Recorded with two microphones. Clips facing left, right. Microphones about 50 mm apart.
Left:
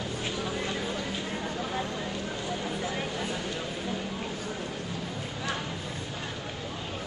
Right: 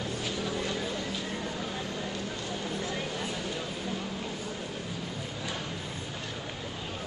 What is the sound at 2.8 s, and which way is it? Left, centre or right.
Vehicle, centre.